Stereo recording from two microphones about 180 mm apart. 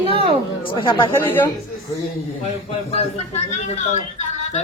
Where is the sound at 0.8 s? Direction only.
25° left (ahead or behind).